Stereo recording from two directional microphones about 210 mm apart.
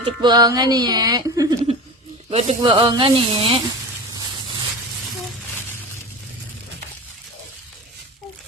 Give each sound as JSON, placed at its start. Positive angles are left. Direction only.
{"t": 0.0, "sound": "speech", "side_deg": -20}